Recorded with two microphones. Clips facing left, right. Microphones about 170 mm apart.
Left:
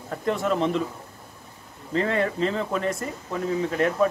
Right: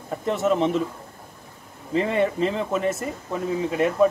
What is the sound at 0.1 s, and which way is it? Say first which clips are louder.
Speech: right 2 dB; 5° right (ahead or behind).